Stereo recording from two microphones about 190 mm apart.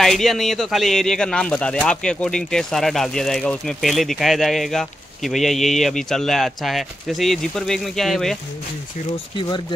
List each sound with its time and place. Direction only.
0.0 s speech: centre (ahead or behind)
9.1 s speech: 25° left (ahead or behind)